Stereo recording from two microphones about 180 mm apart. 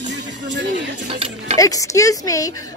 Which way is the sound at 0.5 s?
80° right.